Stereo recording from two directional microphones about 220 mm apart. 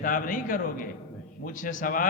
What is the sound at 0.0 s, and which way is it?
A man's voice, 40° left (ahead or behind).